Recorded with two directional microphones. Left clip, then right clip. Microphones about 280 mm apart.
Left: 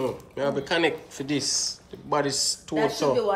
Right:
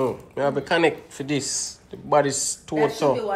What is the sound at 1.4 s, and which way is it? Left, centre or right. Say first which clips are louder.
Speech: left 2 dB; left.